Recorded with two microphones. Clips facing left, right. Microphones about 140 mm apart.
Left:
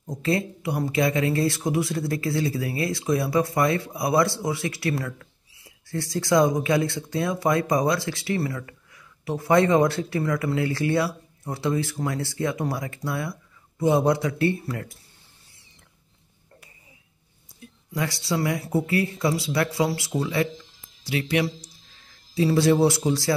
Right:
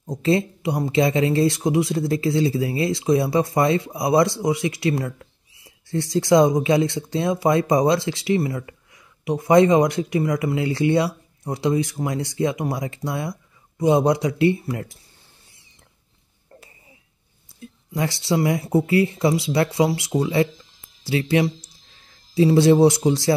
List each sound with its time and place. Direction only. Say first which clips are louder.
0.0 s speech: right 5 dB; 20° right (ahead or behind)
17.9 s speech: right 4 dB; 25° right (ahead or behind)